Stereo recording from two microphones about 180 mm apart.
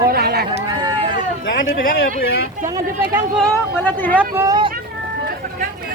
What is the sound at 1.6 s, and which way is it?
Speech, 50° left (ahead or behind).